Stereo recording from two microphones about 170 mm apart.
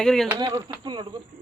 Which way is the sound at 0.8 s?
25° right (ahead or behind).